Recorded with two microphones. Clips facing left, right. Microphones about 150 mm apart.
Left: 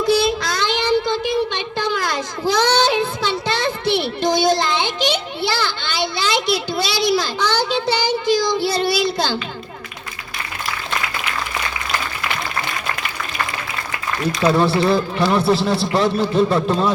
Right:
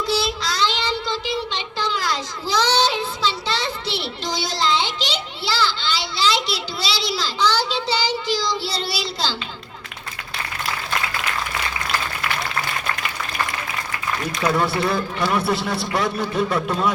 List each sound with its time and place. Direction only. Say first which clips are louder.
0.0 s child singing: left 6 dB; 50° left (ahead or behind)
14.4 s a man's voice: left 5 dB; 25° left (ahead or behind)